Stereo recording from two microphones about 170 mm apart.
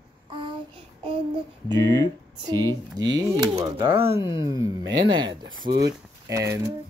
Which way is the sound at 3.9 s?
15° right (ahead or behind).